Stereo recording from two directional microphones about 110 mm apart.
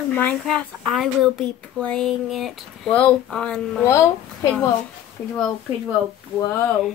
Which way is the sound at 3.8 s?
25° left (ahead or behind).